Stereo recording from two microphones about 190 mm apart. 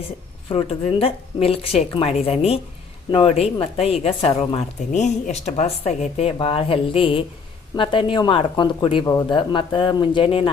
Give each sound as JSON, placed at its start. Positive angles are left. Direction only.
{"t": 0.5, "sound": "a woman's voice", "side_deg": 30}